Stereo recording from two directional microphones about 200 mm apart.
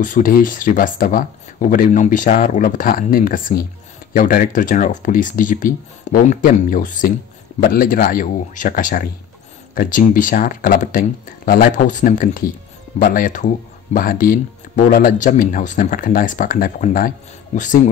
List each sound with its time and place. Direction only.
0.0 s speech: 40° left (ahead or behind)